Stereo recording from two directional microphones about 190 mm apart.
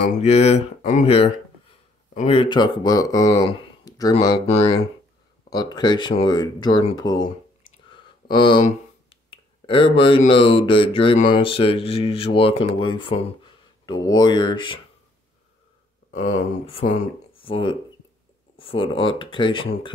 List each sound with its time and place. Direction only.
0.0 s speech: 35° left (ahead or behind); by 4.1 s 20° left (ahead or behind)
5.5 s speech: 20° left (ahead or behind)
7.0 s a sound: 20° left (ahead or behind)
8.6 s speech: 25° left (ahead or behind)
16.1 s speech: 35° left (ahead or behind)